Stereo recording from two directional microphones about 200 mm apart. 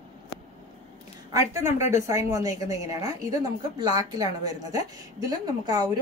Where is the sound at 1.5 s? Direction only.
15° right (ahead or behind).